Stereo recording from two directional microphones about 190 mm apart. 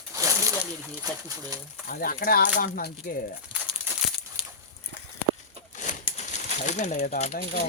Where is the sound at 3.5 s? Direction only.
5° right (ahead or behind).